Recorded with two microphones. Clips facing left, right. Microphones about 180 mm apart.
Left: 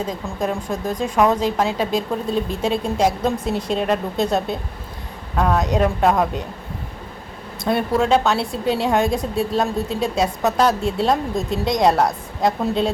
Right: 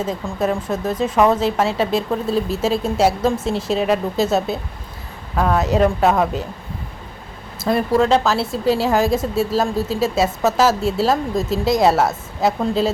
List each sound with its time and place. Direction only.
0.0 s speech: 5° right (ahead or behind)
7.6 s speech: centre (ahead or behind)